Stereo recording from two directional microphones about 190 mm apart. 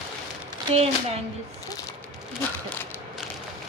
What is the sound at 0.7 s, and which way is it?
Speech, 35° right (ahead or behind).